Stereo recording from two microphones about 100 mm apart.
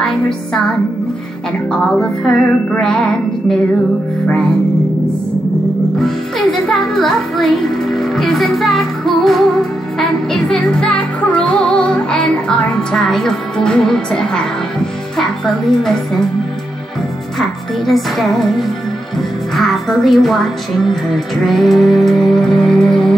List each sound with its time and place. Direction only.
1.7 s speech: 5° left (ahead or behind)
6.6 s speech: centre (ahead or behind)
15.8 s speech: 5° left (ahead or behind)
17.4 s speech: centre (ahead or behind)